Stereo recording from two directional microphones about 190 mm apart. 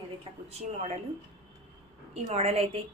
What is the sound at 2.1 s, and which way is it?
Speech, 35° right (ahead or behind).